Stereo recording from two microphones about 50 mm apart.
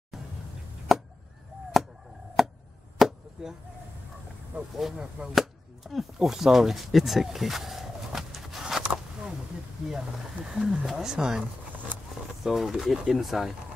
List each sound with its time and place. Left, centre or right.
0.9 s chop: centre
2.4 s chop: centre
4.5 s speech: right
5.3 s speech: centre
8.8 s a sound: centre
9.8 s speech: centre
12.4 s speech: centre